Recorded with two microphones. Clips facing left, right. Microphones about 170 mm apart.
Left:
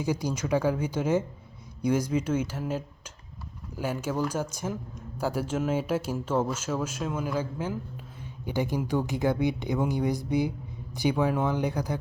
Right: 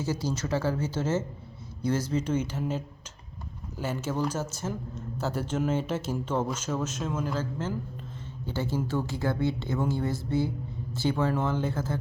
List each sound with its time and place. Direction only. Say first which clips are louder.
0.0 s speech: left 1 dB; 15° left (ahead or behind)